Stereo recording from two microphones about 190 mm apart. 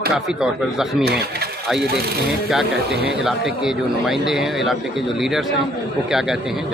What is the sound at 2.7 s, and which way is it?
Speech, 60° right (ahead or behind).